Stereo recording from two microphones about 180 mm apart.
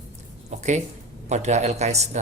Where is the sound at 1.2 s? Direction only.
40° right (ahead or behind).